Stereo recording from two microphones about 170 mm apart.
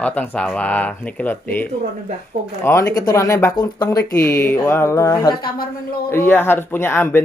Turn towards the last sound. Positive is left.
turn(degrees=15)  # may be behind; listen again after turning